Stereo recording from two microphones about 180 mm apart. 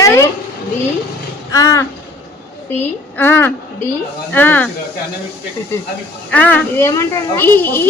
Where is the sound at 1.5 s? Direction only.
20° left (ahead or behind).